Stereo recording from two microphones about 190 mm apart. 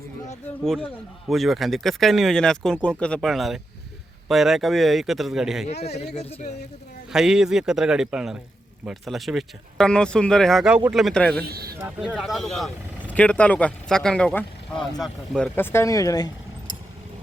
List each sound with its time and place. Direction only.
0.6 s speech: centre (ahead or behind)
7.1 s speech: 5° right (ahead or behind)
11.4 s speech: 55° right (ahead or behind)
11.9 s speech: centre (ahead or behind)
13.1 s speech: 5° left (ahead or behind)